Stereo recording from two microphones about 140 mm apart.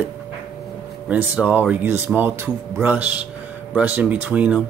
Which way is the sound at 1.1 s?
10° right (ahead or behind).